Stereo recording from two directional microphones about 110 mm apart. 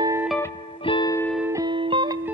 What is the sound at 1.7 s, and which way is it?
Music, 50° right (ahead or behind).